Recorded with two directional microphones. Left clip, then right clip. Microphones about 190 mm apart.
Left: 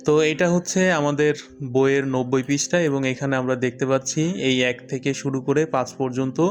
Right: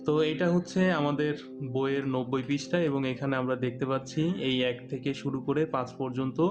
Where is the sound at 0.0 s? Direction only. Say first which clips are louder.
Left 8 dB; 35° left (ahead or behind).